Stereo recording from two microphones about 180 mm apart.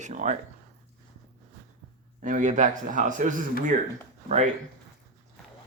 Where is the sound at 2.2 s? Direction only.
45° right (ahead or behind).